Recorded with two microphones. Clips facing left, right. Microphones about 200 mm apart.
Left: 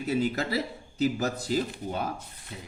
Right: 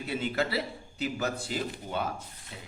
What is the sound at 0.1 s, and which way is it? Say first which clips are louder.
Speech: left 3 dB; 40° left (ahead or behind).